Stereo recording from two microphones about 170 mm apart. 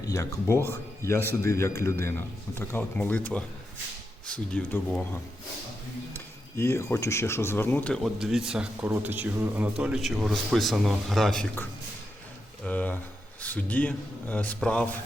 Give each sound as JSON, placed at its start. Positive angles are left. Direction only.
{"t": 0.0, "sound": "speech", "side_deg": 20}
{"t": 6.1, "sound": "a man's voice", "side_deg": 15}
{"t": 12.6, "sound": "speech", "side_deg": 10}